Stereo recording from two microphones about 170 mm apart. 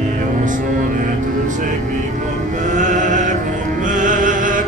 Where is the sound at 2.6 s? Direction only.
45° right (ahead or behind).